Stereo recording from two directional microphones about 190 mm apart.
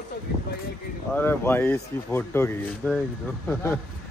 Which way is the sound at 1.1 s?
10° left (ahead or behind).